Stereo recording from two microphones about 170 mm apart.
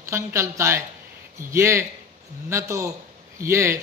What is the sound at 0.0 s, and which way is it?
Speech, 15° right (ahead or behind).